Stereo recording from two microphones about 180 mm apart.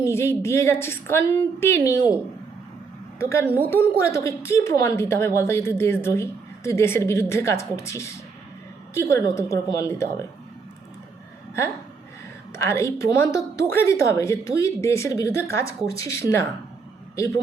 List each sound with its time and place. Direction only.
0.0 s a woman's voice: 15° left (ahead or behind)
3.2 s a woman's voice: 15° left (ahead or behind)
12.5 s a woman's voice: 15° left (ahead or behind)